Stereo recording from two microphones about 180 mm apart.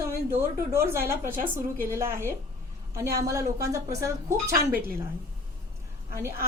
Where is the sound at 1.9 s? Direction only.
15° right (ahead or behind).